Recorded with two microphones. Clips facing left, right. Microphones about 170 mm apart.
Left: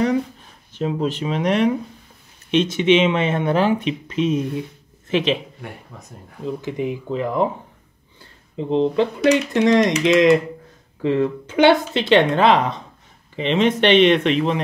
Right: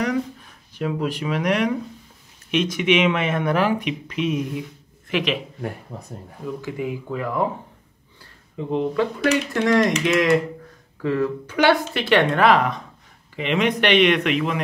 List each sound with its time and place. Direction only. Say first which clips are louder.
0.7 s speech: left 2 dB; 25° left (ahead or behind)
5.9 s speech: right 5 dB; 30° right (ahead or behind)
6.4 s speech: left 3 dB; 20° left (ahead or behind)
8.5 s speech: left 4 dB; 25° left (ahead or behind)